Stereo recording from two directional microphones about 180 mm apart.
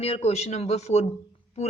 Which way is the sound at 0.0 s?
35° left (ahead or behind).